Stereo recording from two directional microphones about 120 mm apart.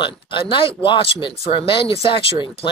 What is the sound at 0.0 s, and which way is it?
Speech, 45° left (ahead or behind).